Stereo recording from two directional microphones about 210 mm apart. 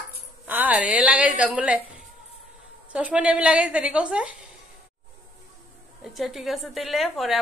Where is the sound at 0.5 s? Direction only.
10° right (ahead or behind).